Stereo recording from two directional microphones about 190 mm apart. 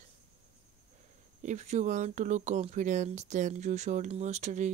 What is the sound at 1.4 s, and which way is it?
Speech, 35° right (ahead or behind).